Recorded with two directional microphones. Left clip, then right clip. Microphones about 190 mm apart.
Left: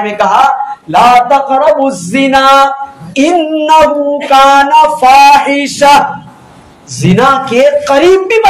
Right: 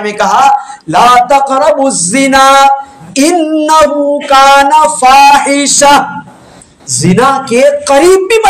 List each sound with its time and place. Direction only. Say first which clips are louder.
0.0 s a man's voice: left 1 dB; 30° right (ahead or behind)
1.3 s speech: even; 25° right (ahead or behind)